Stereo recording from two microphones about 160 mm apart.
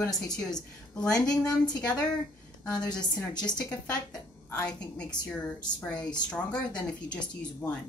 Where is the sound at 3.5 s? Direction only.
25° left (ahead or behind).